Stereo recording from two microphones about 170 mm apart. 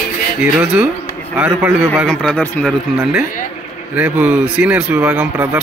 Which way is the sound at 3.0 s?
Centre (ahead or behind).